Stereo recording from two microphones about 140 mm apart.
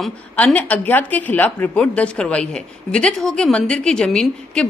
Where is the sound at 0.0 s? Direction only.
5° left (ahead or behind).